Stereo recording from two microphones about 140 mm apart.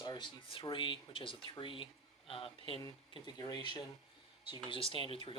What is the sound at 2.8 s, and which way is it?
Speech, 30° left (ahead or behind).